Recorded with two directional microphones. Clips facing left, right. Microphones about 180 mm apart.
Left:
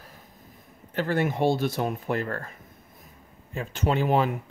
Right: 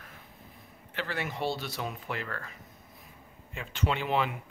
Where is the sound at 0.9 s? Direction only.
45° left (ahead or behind).